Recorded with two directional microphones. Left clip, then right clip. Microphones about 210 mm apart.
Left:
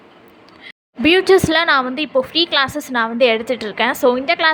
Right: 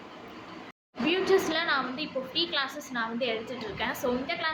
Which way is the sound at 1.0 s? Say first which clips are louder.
Left 13 dB; 55° left (ahead or behind).